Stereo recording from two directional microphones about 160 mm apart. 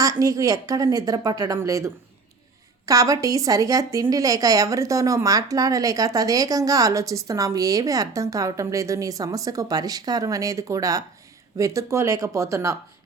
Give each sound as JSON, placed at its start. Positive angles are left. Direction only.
{"t": 0.0, "sound": "a woman's voice", "side_deg": -20}